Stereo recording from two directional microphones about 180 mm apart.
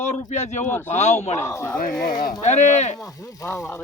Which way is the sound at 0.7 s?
10° left (ahead or behind).